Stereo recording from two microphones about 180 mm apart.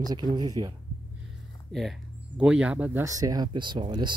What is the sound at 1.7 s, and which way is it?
Speech, centre (ahead or behind).